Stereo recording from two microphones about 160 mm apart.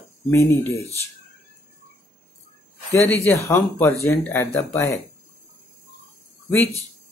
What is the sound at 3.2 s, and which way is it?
Speech, 15° left (ahead or behind).